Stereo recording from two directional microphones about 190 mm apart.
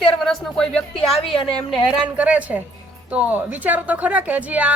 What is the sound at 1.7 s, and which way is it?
A woman's voice, 5° right (ahead or behind).